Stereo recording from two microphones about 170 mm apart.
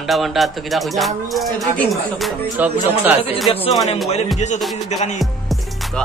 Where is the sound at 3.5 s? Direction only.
35° left (ahead or behind).